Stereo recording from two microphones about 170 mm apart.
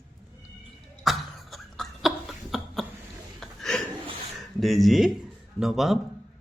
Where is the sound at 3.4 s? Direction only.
Centre (ahead or behind).